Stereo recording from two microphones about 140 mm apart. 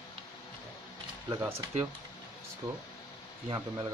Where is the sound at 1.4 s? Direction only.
15° right (ahead or behind).